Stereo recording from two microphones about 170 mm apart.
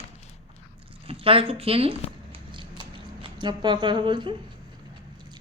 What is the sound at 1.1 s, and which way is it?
Speech, 30° right (ahead or behind).